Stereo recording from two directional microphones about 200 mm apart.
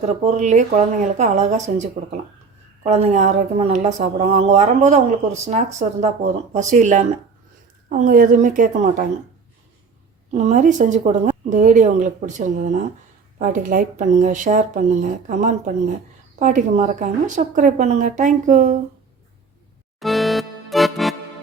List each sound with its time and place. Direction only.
0.0 s a woman's voice: 35° right (ahead or behind)
10.3 s a woman's voice: 40° right (ahead or behind)
20.0 s music: centre (ahead or behind)